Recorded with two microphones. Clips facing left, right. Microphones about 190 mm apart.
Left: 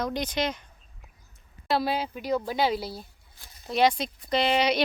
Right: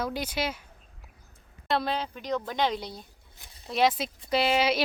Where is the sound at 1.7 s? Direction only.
5° left (ahead or behind).